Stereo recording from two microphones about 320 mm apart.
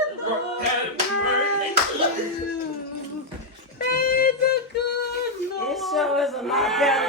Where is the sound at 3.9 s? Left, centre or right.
Left.